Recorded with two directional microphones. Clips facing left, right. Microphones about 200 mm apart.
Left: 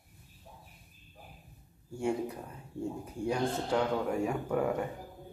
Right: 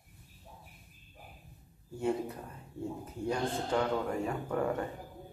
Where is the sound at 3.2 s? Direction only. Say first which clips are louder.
Left 2 dB; 10° left (ahead or behind).